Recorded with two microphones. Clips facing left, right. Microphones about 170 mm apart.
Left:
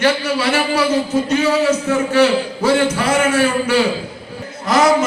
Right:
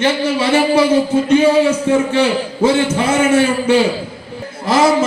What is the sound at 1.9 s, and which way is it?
Speech, 25° right (ahead or behind).